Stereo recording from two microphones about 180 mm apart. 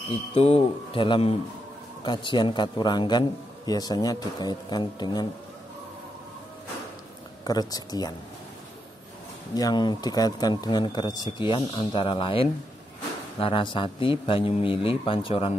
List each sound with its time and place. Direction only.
0.3 s a man's voice: 35° left (ahead or behind)
7.4 s a man's voice: 20° left (ahead or behind)
9.5 s a man's voice: 20° left (ahead or behind)